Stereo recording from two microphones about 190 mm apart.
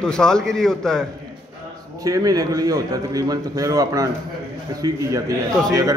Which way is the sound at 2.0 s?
20° right (ahead or behind).